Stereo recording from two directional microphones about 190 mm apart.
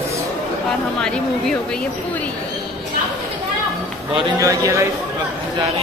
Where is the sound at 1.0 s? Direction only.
5° left (ahead or behind).